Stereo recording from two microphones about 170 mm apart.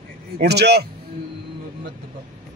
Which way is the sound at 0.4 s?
75° right (ahead or behind).